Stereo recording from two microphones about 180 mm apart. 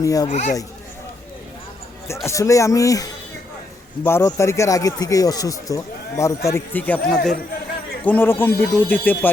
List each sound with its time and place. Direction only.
0.0 s speech: 20° left (ahead or behind)
0.3 s speech: 40° left (ahead or behind)
2.2 s speech: 15° left (ahead or behind)